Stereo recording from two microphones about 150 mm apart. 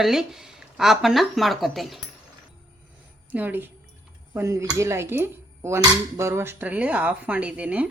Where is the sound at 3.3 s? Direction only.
10° right (ahead or behind).